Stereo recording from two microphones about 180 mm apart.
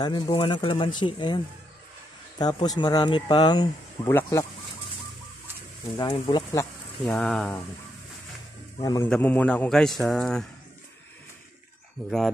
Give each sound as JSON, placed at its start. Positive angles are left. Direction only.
{"t": 0.0, "sound": "a man's voice", "side_deg": 25}
{"t": 5.9, "sound": "speech", "side_deg": 20}
{"t": 7.0, "sound": "speech", "side_deg": 5}
{"t": 8.7, "sound": "speech", "side_deg": 20}
{"t": 9.1, "sound": "speech", "side_deg": 10}